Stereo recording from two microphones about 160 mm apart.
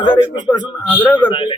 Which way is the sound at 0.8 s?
10° left (ahead or behind).